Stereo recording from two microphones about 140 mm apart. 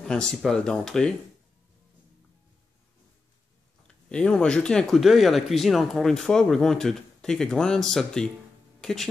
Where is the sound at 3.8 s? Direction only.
5° left (ahead or behind).